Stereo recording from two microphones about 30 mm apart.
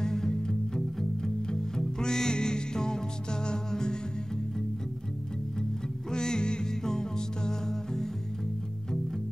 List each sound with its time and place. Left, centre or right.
0.0 s music: centre
6.1 s music: left